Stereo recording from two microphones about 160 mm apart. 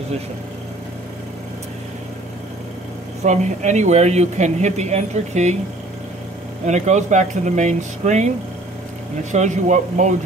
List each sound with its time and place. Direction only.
3.3 s speech: 50° right (ahead or behind)
6.6 s speech: 50° right (ahead or behind)